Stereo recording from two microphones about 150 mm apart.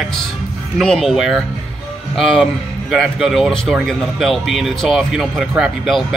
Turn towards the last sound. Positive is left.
turn(degrees=0)  # may be behind; listen again after turning